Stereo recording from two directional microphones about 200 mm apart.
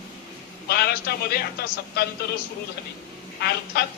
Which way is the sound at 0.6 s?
50° left (ahead or behind).